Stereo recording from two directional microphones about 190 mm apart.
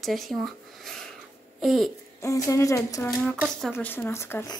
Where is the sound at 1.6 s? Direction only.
Centre (ahead or behind).